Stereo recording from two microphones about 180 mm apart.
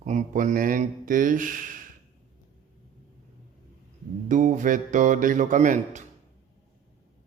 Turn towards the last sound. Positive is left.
turn(degrees=-45)  # may be behind; listen again after turning